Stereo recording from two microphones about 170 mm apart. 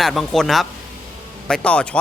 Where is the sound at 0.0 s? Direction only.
Centre (ahead or behind).